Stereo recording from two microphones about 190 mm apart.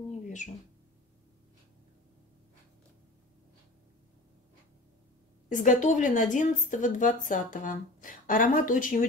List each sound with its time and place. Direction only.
5.5 s a woman's voice: 40° left (ahead or behind)